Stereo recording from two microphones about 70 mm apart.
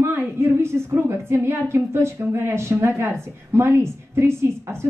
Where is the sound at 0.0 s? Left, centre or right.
Right.